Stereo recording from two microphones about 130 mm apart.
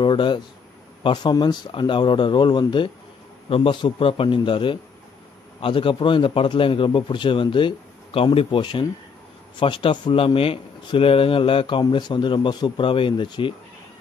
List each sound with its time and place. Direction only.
0.0 s a man's voice: 40° left (ahead or behind)